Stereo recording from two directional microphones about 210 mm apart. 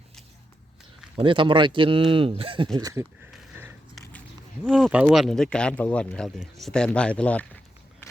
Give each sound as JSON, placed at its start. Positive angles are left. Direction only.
{"t": 1.1, "sound": "speech", "side_deg": -25}
{"t": 3.3, "sound": "biting", "side_deg": -10}
{"t": 4.6, "sound": "speech", "side_deg": 0}